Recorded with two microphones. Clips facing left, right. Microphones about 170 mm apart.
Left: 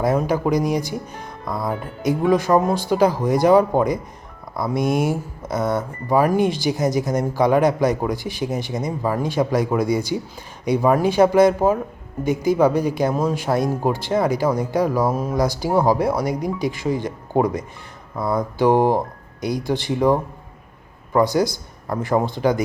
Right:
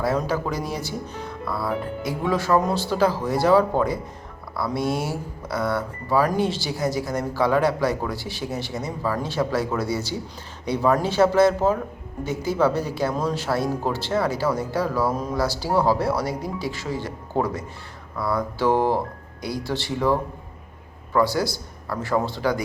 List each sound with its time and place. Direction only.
0.0 s a man's voice: 15° left (ahead or behind)